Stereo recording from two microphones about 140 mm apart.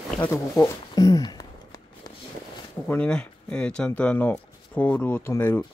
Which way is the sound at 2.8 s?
10° left (ahead or behind).